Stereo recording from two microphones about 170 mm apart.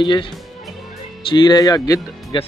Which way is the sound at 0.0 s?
25° left (ahead or behind).